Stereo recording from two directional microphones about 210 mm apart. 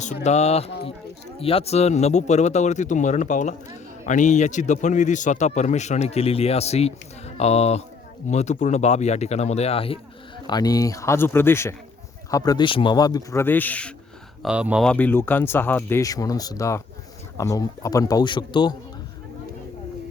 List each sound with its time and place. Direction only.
0.0 s a man's voice: 35° left (ahead or behind); by 13.9 s 5° left (ahead or behind)
14.4 s speech: 5° right (ahead or behind); by 18.8 s 20° left (ahead or behind)